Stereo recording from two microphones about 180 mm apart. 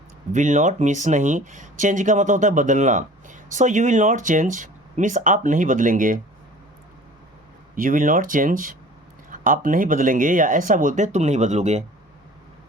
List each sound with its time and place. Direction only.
0.3 s speech: 45° right (ahead or behind)
7.8 s speech: 50° right (ahead or behind)